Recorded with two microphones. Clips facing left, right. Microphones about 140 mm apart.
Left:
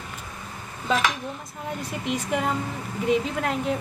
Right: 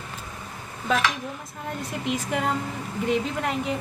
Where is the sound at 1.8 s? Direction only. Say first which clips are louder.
Right 1 dB; centre (ahead or behind).